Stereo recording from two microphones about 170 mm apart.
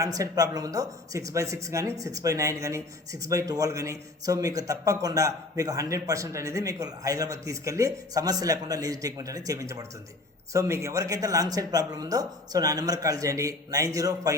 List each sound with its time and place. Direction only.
0.0 s speech: 20° right (ahead or behind)